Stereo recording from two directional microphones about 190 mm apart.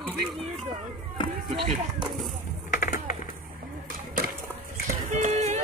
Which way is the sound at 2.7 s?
45° left (ahead or behind).